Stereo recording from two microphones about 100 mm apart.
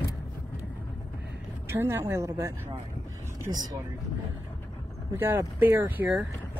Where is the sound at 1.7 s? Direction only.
25° right (ahead or behind).